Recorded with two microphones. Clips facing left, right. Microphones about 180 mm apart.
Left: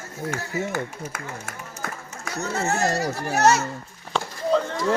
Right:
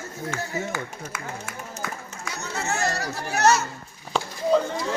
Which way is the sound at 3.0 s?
50° left (ahead or behind).